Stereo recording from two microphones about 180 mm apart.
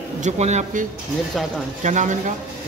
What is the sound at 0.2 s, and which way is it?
Speech, 40° right (ahead or behind).